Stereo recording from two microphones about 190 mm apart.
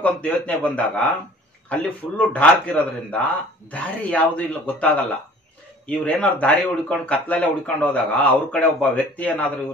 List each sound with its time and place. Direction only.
0.0 s speech: 10° left (ahead or behind)